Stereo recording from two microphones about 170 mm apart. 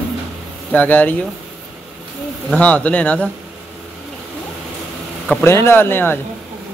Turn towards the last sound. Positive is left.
turn(degrees=10)  # may be behind; listen again after turning